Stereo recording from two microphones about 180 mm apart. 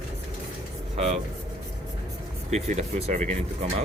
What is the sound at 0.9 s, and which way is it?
Speech, 35° right (ahead or behind).